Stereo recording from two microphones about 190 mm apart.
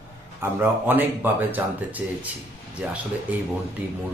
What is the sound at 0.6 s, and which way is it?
Speech, 10° right (ahead or behind).